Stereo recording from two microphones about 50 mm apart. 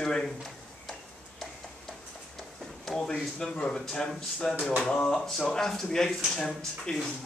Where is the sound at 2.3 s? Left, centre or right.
Centre.